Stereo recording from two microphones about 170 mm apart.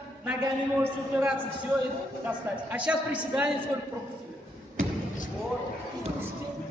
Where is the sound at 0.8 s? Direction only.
10° right (ahead or behind).